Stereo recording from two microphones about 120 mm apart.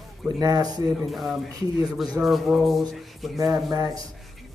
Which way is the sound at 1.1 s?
Centre (ahead or behind).